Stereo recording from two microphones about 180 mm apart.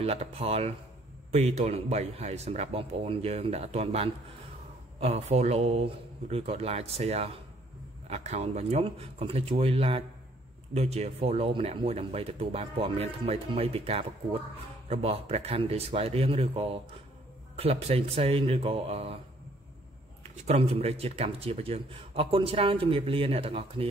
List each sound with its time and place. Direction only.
0.0 s a man's voice: 35° right (ahead or behind)
20.2 s a man's voice: 35° right (ahead or behind)